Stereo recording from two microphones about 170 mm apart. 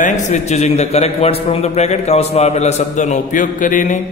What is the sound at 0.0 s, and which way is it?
A man's voice, 45° left (ahead or behind).